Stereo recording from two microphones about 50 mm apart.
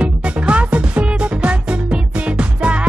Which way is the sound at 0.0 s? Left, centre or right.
Right.